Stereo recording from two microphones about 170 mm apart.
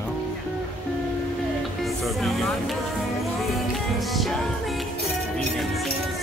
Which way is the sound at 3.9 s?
Centre (ahead or behind).